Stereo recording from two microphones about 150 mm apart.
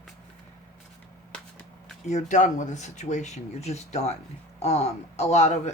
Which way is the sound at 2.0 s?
50° left (ahead or behind).